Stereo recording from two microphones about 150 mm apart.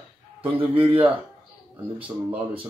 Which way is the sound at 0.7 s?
40° right (ahead or behind).